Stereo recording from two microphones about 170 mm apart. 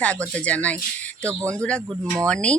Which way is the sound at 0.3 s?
10° left (ahead or behind).